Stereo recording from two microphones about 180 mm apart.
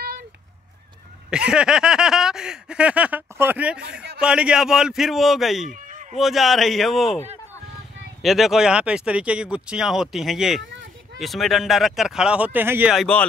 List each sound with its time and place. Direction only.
1.3 s speech: 5° right (ahead or behind)
5.7 s a sound: 45° right (ahead or behind)
6.1 s speech: centre (ahead or behind)
8.2 s speech: centre (ahead or behind)
10.6 s a sound: 85° right
11.1 s speech: centre (ahead or behind)
12.9 s speech: 5° left (ahead or behind)